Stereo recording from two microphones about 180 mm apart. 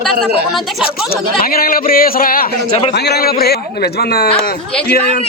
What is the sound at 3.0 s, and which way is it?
Speech, 65° left (ahead or behind).